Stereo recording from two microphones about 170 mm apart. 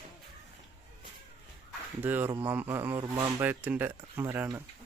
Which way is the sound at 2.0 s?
10° right (ahead or behind).